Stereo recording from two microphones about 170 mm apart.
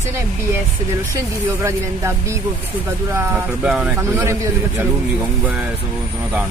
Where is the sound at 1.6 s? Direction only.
15° right (ahead or behind).